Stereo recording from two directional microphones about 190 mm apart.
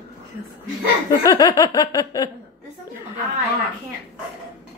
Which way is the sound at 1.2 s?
20° left (ahead or behind).